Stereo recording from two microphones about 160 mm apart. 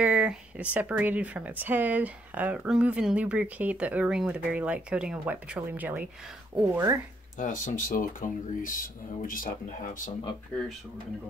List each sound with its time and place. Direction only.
0.0 s speech: 5° right (ahead or behind)
7.3 s speech: 55° left (ahead or behind)